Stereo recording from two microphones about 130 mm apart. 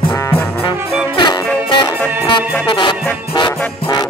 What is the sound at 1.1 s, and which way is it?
Music, 35° left (ahead or behind).